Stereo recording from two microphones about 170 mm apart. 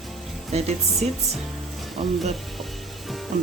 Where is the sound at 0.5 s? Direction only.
35° right (ahead or behind).